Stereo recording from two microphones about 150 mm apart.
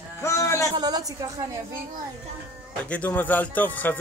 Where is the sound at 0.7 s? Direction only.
25° right (ahead or behind).